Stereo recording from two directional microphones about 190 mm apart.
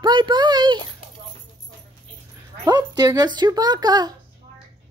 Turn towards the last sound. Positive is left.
turn(degrees=-20)  # may be behind; listen again after turning